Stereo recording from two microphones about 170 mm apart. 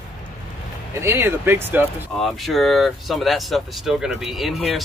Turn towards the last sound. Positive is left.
turn(degrees=0)  # may be behind; listen again after turning